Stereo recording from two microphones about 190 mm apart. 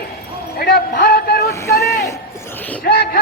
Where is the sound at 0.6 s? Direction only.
50° left (ahead or behind).